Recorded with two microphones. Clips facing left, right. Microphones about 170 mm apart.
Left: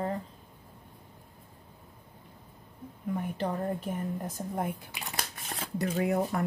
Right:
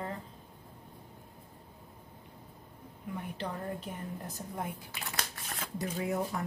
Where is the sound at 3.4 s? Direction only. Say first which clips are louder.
Left 4 dB; 50° left (ahead or behind).